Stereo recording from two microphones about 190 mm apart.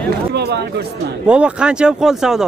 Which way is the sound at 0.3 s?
60° right (ahead or behind).